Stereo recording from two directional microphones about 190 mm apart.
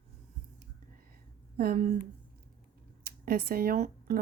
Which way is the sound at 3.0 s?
55° right (ahead or behind).